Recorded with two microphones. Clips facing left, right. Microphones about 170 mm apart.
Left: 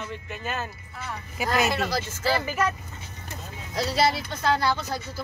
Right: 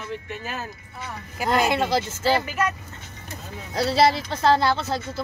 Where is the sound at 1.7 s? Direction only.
25° right (ahead or behind).